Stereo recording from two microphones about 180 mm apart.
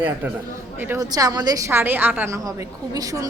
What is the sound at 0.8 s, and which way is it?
A woman's voice, 15° right (ahead or behind).